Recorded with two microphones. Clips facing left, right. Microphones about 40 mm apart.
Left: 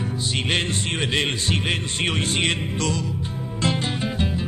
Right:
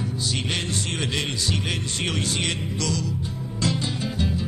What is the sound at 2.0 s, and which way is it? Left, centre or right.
Music, left.